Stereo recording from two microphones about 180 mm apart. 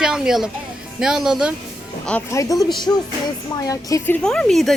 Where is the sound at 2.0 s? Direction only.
5° left (ahead or behind).